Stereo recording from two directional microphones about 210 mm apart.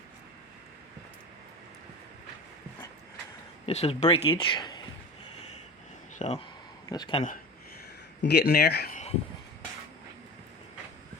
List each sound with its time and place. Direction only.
3.7 s speech: 30° left (ahead or behind)
6.1 s a sound: 30° left (ahead or behind)
6.9 s speech: 20° left (ahead or behind)
8.2 s speech: 50° left (ahead or behind)